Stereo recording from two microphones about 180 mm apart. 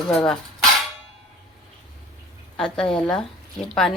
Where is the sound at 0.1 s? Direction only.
Centre (ahead or behind).